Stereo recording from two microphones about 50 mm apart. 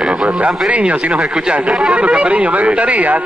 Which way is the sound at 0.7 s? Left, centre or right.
Right.